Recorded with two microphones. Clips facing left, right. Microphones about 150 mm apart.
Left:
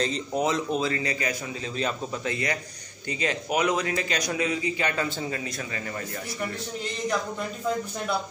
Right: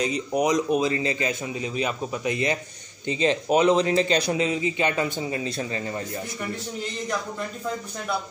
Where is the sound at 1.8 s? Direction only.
10° right (ahead or behind).